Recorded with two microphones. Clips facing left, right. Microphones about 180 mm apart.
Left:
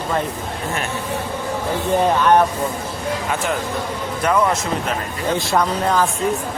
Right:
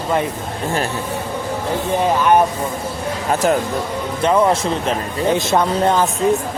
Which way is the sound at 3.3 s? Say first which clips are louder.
Right 8 dB; 40° right (ahead or behind).